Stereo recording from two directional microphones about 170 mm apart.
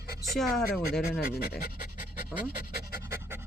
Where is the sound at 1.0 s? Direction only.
65° left (ahead or behind).